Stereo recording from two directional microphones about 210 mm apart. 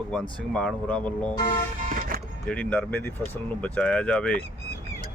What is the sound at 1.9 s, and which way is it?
Music, 40° right (ahead or behind).